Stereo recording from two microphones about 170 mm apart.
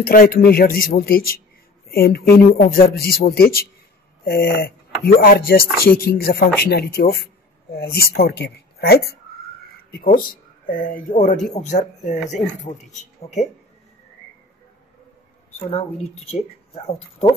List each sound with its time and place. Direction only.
0.0 s a man's voice: 60° left (ahead or behind)
9.8 s speech: 60° left (ahead or behind); by 13.5 s 40° left (ahead or behind)
15.7 s speech: 35° left (ahead or behind)